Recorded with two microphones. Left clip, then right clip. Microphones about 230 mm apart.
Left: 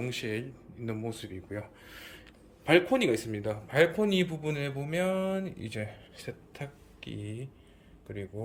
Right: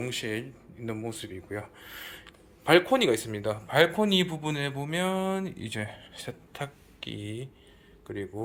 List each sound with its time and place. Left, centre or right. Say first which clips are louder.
0.0 s speech: right 2 dB; centre